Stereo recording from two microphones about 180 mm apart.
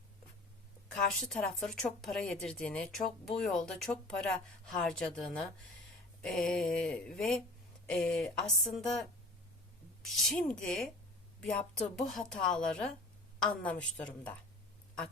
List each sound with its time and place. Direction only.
1.2 s a woman's voice: centre (ahead or behind)